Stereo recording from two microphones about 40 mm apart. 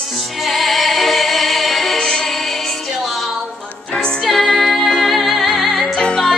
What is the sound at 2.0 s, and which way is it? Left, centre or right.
Music, centre.